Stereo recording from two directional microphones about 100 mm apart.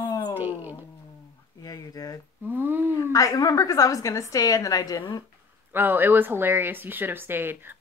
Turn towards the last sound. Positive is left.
turn(degrees=-20)  # may be behind; listen again after turning